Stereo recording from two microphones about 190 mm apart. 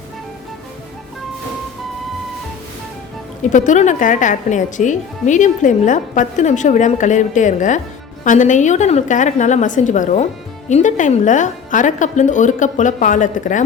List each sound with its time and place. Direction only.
3.5 s a woman's voice: 40° left (ahead or behind)